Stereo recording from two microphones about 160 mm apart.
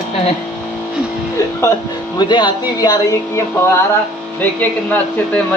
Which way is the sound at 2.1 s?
30° left (ahead or behind).